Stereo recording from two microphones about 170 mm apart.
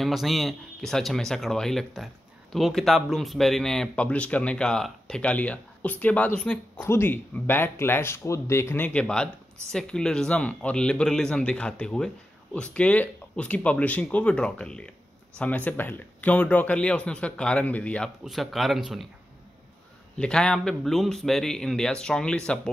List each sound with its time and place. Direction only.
0.0 s speech: centre (ahead or behind)
20.2 s speech: 5° left (ahead or behind)